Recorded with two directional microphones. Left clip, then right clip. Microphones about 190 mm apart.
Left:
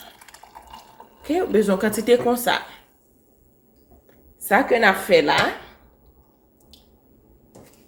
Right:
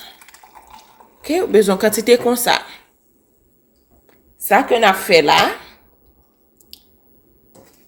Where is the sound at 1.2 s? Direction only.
45° right (ahead or behind).